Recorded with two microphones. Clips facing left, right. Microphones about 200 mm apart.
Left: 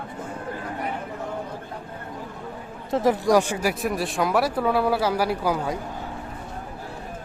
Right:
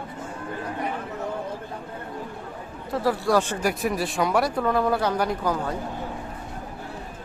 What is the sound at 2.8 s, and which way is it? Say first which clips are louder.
Speech: left 3 dB; 20° left (ahead or behind).